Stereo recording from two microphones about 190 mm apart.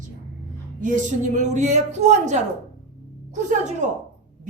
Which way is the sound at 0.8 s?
40° right (ahead or behind).